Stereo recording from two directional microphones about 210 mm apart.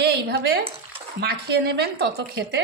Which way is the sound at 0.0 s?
50° right (ahead or behind).